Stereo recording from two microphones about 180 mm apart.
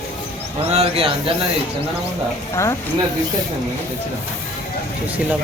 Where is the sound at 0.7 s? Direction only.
30° right (ahead or behind).